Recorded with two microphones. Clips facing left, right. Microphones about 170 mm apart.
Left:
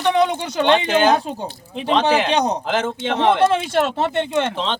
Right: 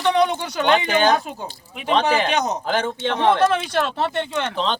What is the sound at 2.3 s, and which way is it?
Speech, 30° left (ahead or behind).